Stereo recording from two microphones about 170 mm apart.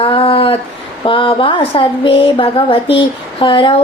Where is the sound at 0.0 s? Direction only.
35° left (ahead or behind).